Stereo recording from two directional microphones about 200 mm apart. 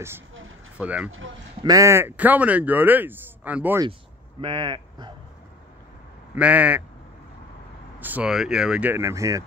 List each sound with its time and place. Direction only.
0.7 s speech: 5° right (ahead or behind)
4.4 s speech: 25° right (ahead or behind)
6.3 s speech: 5° right (ahead or behind)
8.0 s speech: 5° right (ahead or behind)